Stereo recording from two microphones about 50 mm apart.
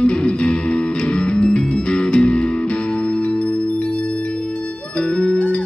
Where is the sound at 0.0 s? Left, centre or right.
Centre.